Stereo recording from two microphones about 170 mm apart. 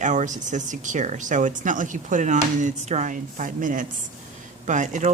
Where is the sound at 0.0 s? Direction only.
45° right (ahead or behind).